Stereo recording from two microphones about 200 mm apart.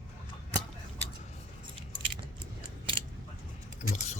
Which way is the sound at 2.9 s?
25° right (ahead or behind).